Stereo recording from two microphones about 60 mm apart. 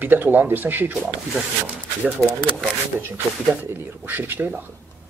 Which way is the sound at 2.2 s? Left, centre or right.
Centre.